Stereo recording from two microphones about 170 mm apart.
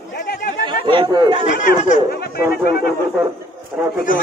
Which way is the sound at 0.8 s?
30° right (ahead or behind).